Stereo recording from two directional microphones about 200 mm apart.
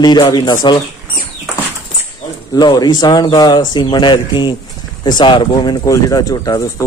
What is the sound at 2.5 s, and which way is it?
Speech, 20° left (ahead or behind).